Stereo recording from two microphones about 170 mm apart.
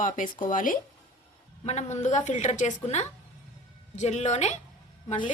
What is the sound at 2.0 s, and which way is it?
Speech, 45° left (ahead or behind).